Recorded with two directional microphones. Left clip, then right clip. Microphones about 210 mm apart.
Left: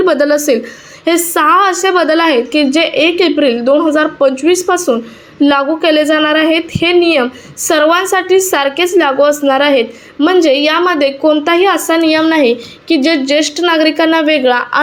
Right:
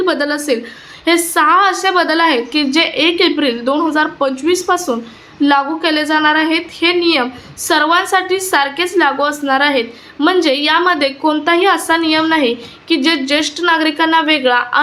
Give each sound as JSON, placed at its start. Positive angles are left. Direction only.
{"t": 0.0, "sound": "a woman's voice", "side_deg": 25}